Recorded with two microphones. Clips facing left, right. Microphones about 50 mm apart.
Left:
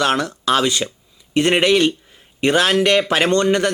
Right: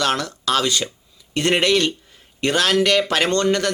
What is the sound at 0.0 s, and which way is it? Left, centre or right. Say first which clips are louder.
Speech: left 3 dB; centre.